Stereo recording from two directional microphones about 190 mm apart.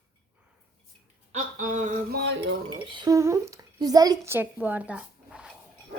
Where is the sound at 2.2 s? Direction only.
65° right (ahead or behind).